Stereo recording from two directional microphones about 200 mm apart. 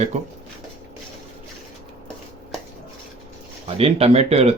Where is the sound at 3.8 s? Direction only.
30° right (ahead or behind).